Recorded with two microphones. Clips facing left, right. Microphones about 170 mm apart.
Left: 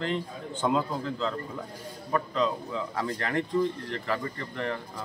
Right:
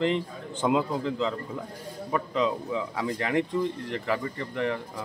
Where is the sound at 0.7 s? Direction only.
15° right (ahead or behind).